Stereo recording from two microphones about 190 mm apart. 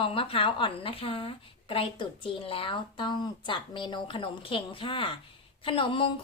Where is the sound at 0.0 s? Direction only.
30° left (ahead or behind).